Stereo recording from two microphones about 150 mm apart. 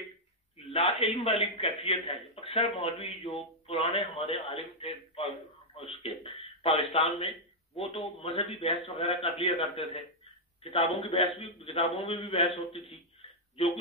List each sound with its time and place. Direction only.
0.7 s a man's voice: 40° left (ahead or behind)